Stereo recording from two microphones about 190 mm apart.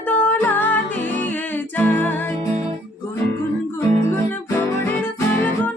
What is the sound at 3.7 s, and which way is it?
Music, 15° left (ahead or behind).